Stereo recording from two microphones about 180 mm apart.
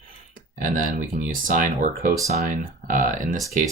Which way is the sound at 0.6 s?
45° right (ahead or behind).